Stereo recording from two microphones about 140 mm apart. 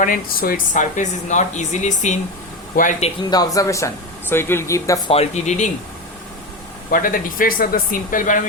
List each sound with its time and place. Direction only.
0.0 s speech: 85° left; by 2.1 s 60° left (ahead or behind)
3.2 s speech: 25° left (ahead or behind)
5.0 s speech: 45° left (ahead or behind)
6.9 s speech: 75° left (ahead or behind)